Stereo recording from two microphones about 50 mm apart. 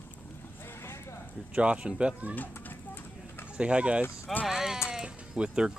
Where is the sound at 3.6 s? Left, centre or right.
Right.